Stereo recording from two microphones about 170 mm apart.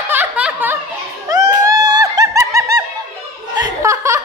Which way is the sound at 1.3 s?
25° right (ahead or behind).